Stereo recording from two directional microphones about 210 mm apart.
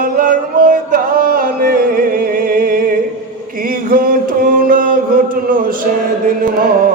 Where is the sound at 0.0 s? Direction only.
40° right (ahead or behind).